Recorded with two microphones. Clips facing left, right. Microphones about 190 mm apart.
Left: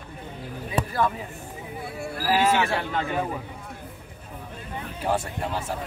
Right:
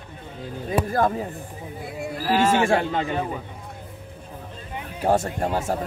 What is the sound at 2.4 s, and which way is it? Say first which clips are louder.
Speech: right 4 dB; 45° right (ahead or behind).